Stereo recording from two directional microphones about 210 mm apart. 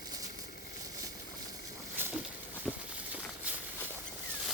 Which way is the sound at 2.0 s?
10° right (ahead or behind).